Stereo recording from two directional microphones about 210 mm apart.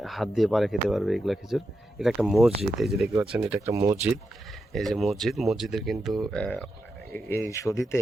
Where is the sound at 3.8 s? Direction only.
30° right (ahead or behind).